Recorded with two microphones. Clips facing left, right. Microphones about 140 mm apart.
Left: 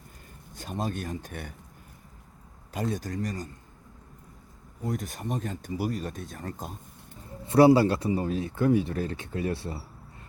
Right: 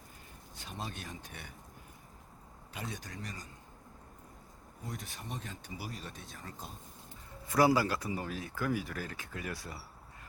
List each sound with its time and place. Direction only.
0.5 s speech: 45° left (ahead or behind)
2.7 s speech: 45° left (ahead or behind)
4.9 s speech: 45° left (ahead or behind)
7.4 s speech: 25° left (ahead or behind)